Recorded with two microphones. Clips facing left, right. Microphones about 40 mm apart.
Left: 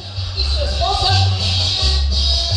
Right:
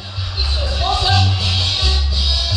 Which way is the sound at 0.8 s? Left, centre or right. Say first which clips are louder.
Right 1 dB; centre.